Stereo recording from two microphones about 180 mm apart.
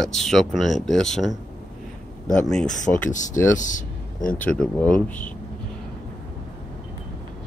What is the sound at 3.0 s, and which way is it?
Speech, 45° left (ahead or behind).